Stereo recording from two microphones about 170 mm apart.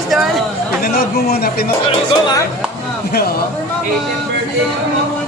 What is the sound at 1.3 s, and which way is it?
Speech, 65° left (ahead or behind).